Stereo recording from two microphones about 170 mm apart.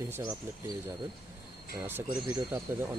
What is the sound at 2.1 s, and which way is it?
Speech, 20° right (ahead or behind).